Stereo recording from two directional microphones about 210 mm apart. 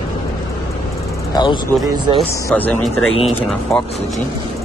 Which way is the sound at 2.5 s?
5° left (ahead or behind).